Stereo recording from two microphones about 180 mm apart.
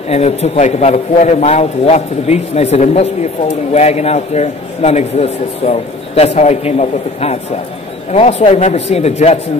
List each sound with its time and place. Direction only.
0.1 s a man's voice: 35° left (ahead or behind)